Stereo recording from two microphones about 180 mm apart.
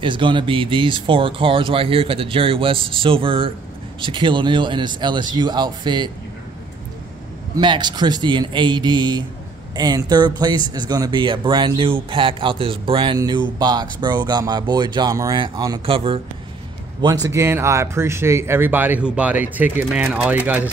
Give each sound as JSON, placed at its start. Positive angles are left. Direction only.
{"t": 0.0, "sound": "speech", "side_deg": -25}
{"t": 7.5, "sound": "speech", "side_deg": -25}
{"t": 17.0, "sound": "speech", "side_deg": -20}